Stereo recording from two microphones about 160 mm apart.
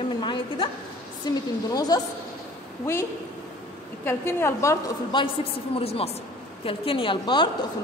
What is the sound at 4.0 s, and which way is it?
Speech, 15° left (ahead or behind).